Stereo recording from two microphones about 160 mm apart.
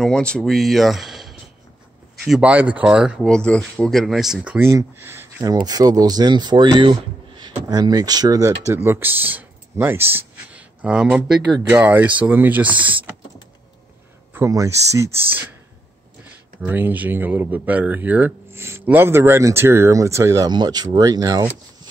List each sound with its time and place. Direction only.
0.0 s speech: 5° left (ahead or behind)
3.3 s speech: 5° left (ahead or behind); by 12.7 s 10° right (ahead or behind)
14.3 s speech: 20° right (ahead or behind)
16.6 s speech: 10° right (ahead or behind)